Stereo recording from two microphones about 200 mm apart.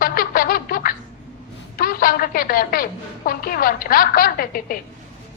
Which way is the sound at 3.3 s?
45° left (ahead or behind).